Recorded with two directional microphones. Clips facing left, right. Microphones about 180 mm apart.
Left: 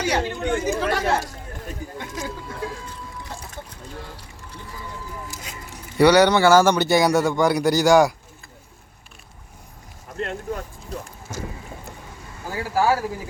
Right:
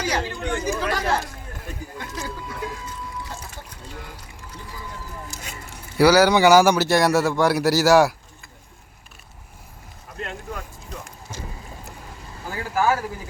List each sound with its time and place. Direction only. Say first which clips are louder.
0.0 s speech: left 3 dB; 25° left (ahead or behind)
2.0 s a sound: even; 20° left (ahead or behind)
5.7 s speech: left 1 dB; centre (ahead or behind)
6.3 s speech: right 1 dB; 15° right (ahead or behind)
6.8 s speech: left 1 dB; centre (ahead or behind)
12.5 s speech: left 1 dB; 35° left (ahead or behind)